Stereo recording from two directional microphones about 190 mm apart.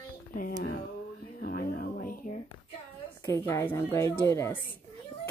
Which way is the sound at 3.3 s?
15° left (ahead or behind).